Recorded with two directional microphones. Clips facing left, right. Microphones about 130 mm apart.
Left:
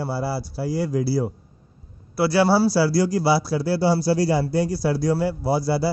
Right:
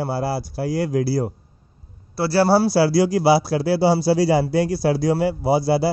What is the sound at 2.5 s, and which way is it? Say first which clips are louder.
A man's voice: right 2 dB; 60° right (ahead or behind).